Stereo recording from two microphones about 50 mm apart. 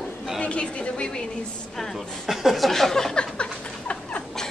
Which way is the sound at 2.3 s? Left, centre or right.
Centre.